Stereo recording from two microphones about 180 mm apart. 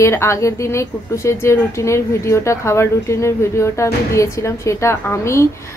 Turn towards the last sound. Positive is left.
turn(degrees=15)  # may be behind; listen again after turning